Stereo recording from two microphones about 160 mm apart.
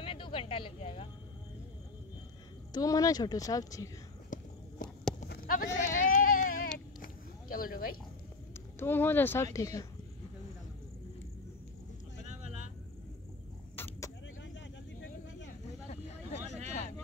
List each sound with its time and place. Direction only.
0.0 s a sound: 35° left (ahead or behind)
2.7 s a woman's voice: 20° left (ahead or behind)
4.3 s walk: 55° left (ahead or behind)
5.3 s sheep: 75° left (ahead or behind)
8.7 s speech: 15° left (ahead or behind)
12.3 s vehicle: 45° right (ahead or behind)
13.7 s vehicle: 15° left (ahead or behind)
15.0 s a sound: 90° left
15.9 s vehicle: 45° left (ahead or behind)